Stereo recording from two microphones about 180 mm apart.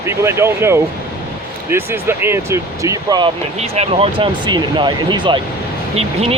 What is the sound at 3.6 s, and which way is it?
Speech, 35° right (ahead or behind).